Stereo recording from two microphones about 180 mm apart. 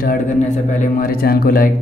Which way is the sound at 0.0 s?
45° left (ahead or behind).